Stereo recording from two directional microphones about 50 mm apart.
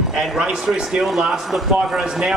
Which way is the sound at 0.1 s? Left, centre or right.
Centre.